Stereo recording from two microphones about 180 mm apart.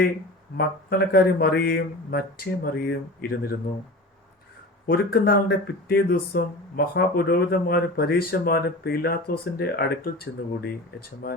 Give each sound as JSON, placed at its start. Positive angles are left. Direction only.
{"t": 0.5, "sound": "speech", "side_deg": 60}
{"t": 4.9, "sound": "speech", "side_deg": 55}